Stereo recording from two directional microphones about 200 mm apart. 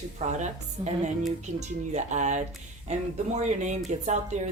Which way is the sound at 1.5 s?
35° right (ahead or behind).